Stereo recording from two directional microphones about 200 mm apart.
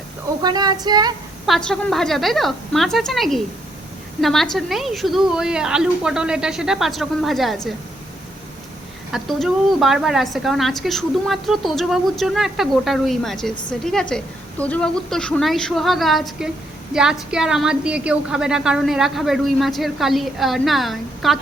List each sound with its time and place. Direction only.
0.4 s child singing: 20° right (ahead or behind)
1.5 s a woman's voice: centre (ahead or behind)
9.1 s a woman's voice: centre (ahead or behind)